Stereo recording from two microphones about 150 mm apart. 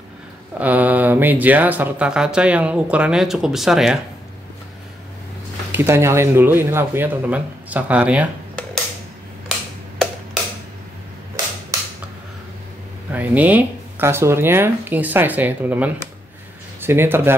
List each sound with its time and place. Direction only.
0.6 s speech: 10° right (ahead or behind)
5.7 s speech: 15° right (ahead or behind)
11.7 s a sound: 25° right (ahead or behind)
13.1 s speech: 10° right (ahead or behind)